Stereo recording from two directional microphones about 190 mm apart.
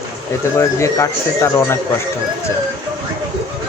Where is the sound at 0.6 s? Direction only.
15° left (ahead or behind).